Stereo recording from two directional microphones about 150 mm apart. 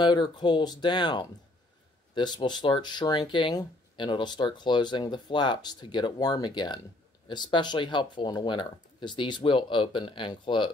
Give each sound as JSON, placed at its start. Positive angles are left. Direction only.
{"t": 0.0, "sound": "speech", "side_deg": 30}